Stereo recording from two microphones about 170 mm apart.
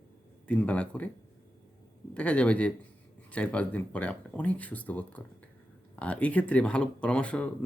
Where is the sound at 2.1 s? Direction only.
5° left (ahead or behind).